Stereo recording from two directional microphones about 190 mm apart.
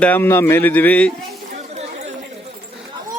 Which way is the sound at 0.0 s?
10° left (ahead or behind).